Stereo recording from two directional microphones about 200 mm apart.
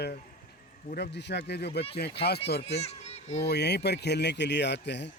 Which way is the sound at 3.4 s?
55° left (ahead or behind).